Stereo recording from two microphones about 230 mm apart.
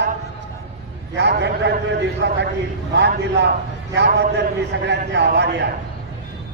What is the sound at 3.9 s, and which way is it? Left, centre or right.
A man's voice, right.